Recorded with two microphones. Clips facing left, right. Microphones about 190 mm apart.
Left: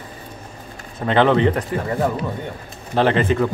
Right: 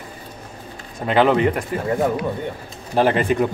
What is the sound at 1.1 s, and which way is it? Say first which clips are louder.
Speech: left 1 dB; 10° right (ahead or behind).